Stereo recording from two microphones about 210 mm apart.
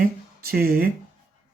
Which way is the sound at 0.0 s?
45° right (ahead or behind).